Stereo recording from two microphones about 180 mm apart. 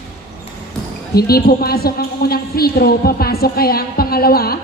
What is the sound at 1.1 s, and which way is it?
A woman's voice, 60° left (ahead or behind).